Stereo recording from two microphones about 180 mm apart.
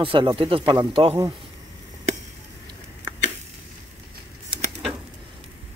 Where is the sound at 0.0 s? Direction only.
30° right (ahead or behind).